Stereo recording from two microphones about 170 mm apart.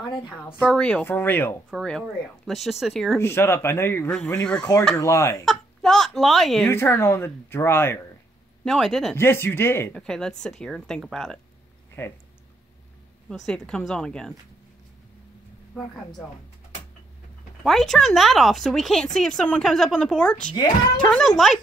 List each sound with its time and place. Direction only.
0.6 s speech: 5° left (ahead or behind)
1.7 s speech: centre (ahead or behind)
3.2 s speech: 15° left (ahead or behind)
4.9 s speech: 15° left (ahead or behind)
5.4 s speech: centre (ahead or behind)
6.7 s speech: 15° left (ahead or behind)
8.6 s speech: centre (ahead or behind)
9.1 s speech: 15° left (ahead or behind)
10.0 s speech: 5° left (ahead or behind)
12.0 s speech: 10° left (ahead or behind)
13.3 s speech: 5° left (ahead or behind)
17.6 s speech: centre (ahead or behind)